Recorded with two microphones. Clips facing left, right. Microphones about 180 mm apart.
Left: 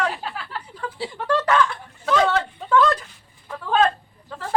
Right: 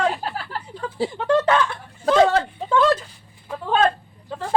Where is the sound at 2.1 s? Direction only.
35° right (ahead or behind).